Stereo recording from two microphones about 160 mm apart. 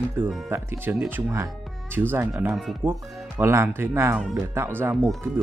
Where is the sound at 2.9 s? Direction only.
15° right (ahead or behind).